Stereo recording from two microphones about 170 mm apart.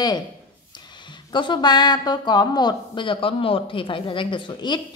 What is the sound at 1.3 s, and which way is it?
Speech, 25° left (ahead or behind).